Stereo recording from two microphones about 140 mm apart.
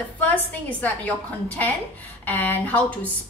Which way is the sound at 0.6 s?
10° left (ahead or behind).